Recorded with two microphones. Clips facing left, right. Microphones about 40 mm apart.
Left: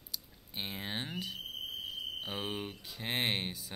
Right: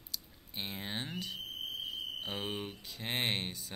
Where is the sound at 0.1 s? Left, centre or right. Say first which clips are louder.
Even; centre.